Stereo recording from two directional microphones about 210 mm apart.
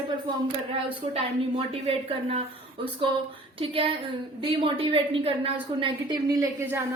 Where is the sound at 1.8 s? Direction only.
30° right (ahead or behind).